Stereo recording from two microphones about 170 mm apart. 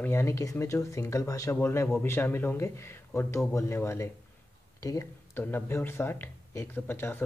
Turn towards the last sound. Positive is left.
turn(degrees=15)  # may be behind; listen again after turning